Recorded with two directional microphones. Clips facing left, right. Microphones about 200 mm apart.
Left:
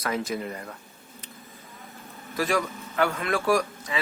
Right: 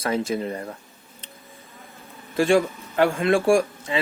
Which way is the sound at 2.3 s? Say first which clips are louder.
Right 7 dB; 30° right (ahead or behind).